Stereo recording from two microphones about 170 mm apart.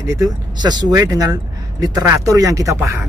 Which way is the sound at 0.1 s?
25° right (ahead or behind).